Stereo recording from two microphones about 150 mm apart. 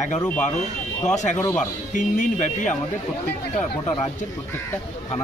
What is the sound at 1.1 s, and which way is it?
Speech, 55° left (ahead or behind).